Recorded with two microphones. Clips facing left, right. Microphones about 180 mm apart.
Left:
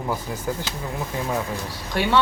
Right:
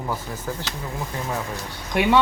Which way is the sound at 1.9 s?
15° right (ahead or behind).